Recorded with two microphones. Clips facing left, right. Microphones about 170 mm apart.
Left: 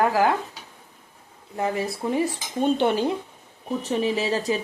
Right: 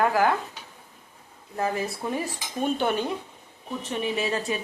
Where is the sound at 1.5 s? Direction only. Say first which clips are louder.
Left 2 dB; 20° left (ahead or behind).